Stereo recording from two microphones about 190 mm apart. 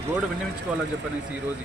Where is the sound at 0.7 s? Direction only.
5° right (ahead or behind).